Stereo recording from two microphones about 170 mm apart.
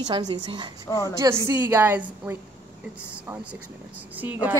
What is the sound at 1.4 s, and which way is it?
A woman's voice, 15° right (ahead or behind).